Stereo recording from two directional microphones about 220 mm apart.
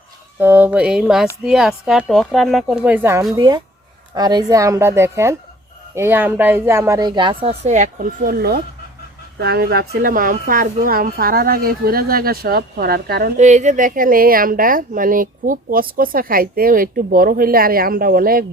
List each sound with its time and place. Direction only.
0.3 s a woman's voice: 10° right (ahead or behind); by 18.4 s 40° right (ahead or behind)